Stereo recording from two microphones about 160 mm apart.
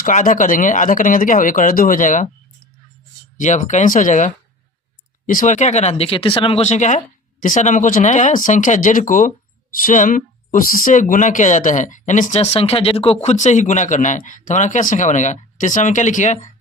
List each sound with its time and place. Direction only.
0.0 s speech: 55° left (ahead or behind)
3.3 s speech: 50° left (ahead or behind)